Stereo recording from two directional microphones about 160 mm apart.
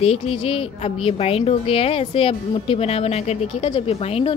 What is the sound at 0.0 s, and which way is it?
A woman's voice, 40° left (ahead or behind).